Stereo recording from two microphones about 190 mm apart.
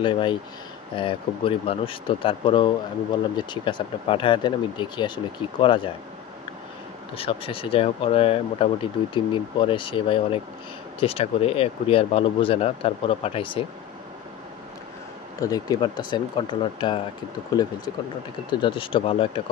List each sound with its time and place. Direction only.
0.0 s speech: 25° left (ahead or behind)
7.2 s speech: 30° left (ahead or behind)
15.4 s speech: 20° left (ahead or behind)